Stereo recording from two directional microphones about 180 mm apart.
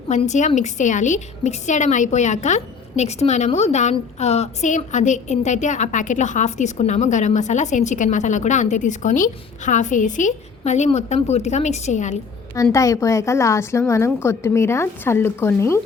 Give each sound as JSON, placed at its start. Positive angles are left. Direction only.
{"t": 0.1, "sound": "a woman's voice", "side_deg": 40}
{"t": 12.7, "sound": "a woman's voice", "side_deg": 15}